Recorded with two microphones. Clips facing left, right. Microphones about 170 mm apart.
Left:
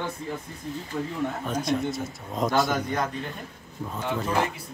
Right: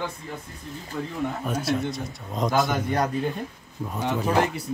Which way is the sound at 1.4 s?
5° right (ahead or behind).